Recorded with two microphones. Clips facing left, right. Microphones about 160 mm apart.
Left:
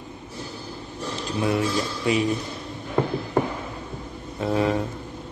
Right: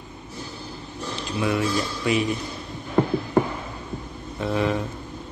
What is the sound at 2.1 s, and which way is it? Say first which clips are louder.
Speech: even; 30° left (ahead or behind).